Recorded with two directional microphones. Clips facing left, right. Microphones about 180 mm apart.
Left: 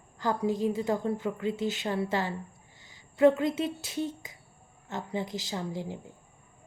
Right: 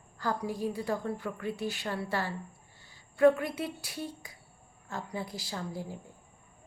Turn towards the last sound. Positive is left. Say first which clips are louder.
# left 3 dB
turn(degrees=20)  # may be behind; listen again after turning